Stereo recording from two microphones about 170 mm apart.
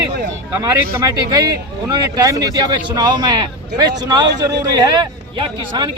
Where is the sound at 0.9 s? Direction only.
20° right (ahead or behind).